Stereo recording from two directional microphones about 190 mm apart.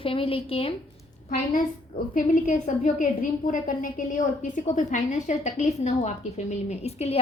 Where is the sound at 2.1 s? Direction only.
40° left (ahead or behind).